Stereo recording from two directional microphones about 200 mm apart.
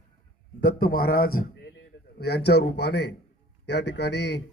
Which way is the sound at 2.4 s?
55° left (ahead or behind).